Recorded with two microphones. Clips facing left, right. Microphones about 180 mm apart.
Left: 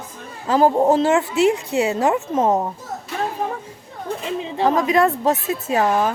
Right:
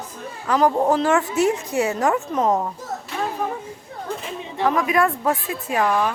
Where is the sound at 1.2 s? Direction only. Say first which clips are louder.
Left 3 dB; 20° right (ahead or behind).